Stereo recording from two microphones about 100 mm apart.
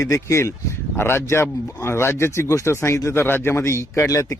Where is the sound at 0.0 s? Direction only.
30° left (ahead or behind).